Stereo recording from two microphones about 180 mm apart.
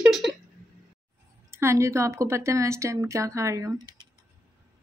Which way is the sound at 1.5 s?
15° right (ahead or behind).